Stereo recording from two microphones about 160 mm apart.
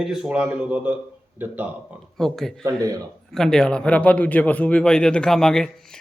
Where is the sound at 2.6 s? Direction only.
20° right (ahead or behind).